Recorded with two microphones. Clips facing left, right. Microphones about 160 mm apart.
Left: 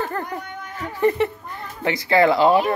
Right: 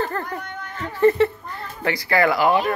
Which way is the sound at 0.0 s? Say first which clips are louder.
Right 1 dB; 15° left (ahead or behind).